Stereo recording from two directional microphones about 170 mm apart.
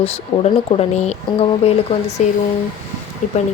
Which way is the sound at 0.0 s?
35° left (ahead or behind).